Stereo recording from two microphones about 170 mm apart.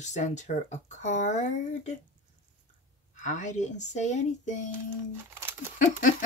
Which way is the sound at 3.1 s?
45° left (ahead or behind).